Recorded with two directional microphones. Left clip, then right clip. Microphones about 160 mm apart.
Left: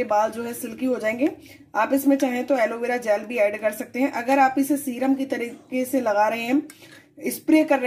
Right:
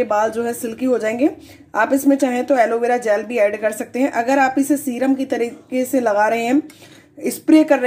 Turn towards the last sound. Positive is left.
turn(degrees=0)  # may be behind; listen again after turning